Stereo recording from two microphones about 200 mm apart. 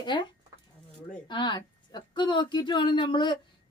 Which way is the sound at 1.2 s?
20° left (ahead or behind).